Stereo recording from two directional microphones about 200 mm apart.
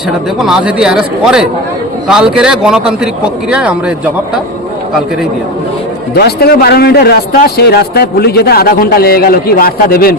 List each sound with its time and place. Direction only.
0.3 s a man's voice: 5° right (ahead or behind)
6.1 s a man's voice: 50° left (ahead or behind)